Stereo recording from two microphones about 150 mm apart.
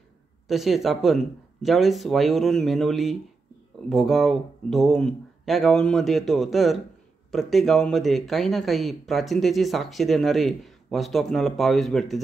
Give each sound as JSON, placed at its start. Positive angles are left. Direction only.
{"t": 0.5, "sound": "speech", "side_deg": 0}